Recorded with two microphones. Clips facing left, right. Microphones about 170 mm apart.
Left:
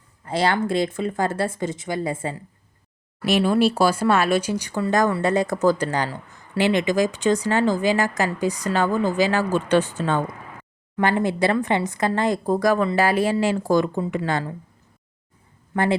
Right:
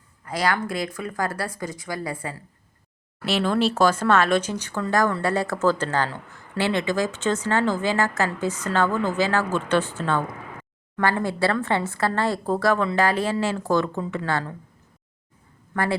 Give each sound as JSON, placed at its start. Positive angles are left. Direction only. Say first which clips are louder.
{"t": 0.3, "sound": "speech", "louder": "left 3 dB", "side_deg": 25}
{"t": 3.2, "sound": "a woman's voice", "louder": "left 3 dB", "side_deg": 15}
{"t": 15.7, "sound": "speech", "louder": "left 3 dB", "side_deg": 20}